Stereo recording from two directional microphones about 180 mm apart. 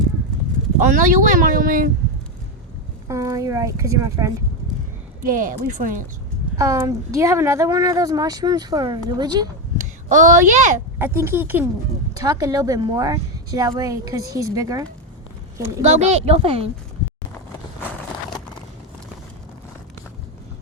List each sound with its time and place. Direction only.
0.8 s speech: 45° right (ahead or behind)
3.1 s speech: 20° right (ahead or behind)
5.2 s speech: 45° right (ahead or behind)
6.6 s a woman's voice: 15° right (ahead or behind)
9.7 s a sound: 45° right (ahead or behind)
10.9 s a woman's voice: 15° right (ahead or behind)
15.8 s speech: 40° right (ahead or behind)